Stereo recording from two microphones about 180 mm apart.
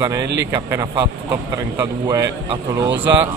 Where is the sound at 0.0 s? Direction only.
15° right (ahead or behind).